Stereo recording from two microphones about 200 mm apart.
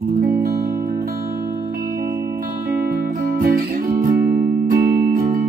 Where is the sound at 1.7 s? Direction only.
45° right (ahead or behind).